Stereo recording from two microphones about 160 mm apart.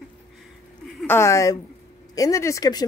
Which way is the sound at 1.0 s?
15° left (ahead or behind).